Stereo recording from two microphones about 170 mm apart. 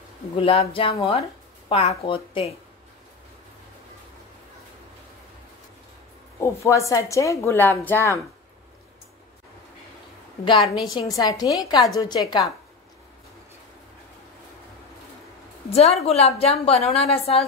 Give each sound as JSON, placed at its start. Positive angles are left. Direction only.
{"t": 0.4, "sound": "a woman's voice", "side_deg": 35}
{"t": 6.4, "sound": "a woman's voice", "side_deg": 15}
{"t": 10.7, "sound": "a woman's voice", "side_deg": 25}
{"t": 15.7, "sound": "a woman's voice", "side_deg": 40}